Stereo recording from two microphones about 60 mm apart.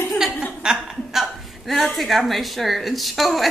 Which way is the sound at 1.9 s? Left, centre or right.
Centre.